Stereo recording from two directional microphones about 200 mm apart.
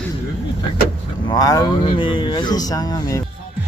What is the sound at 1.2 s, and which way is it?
Speech, 20° left (ahead or behind).